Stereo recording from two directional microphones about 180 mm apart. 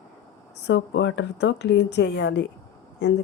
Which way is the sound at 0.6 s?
75° left (ahead or behind).